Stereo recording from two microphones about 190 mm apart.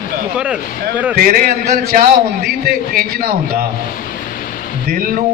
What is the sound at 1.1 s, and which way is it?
A man's voice, 50° right (ahead or behind).